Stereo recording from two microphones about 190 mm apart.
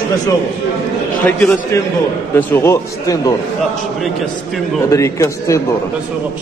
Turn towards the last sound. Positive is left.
turn(degrees=15)  # may be behind; listen again after turning